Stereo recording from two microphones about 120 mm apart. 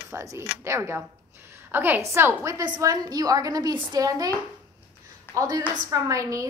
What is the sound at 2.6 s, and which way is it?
A woman's voice, 35° right (ahead or behind).